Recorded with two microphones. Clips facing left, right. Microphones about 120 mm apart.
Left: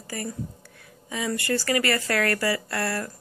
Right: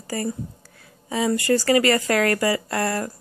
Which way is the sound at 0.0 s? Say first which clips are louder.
Right 5 dB; 30° right (ahead or behind).